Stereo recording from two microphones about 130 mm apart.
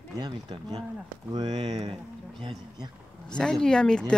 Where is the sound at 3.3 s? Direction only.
5° left (ahead or behind).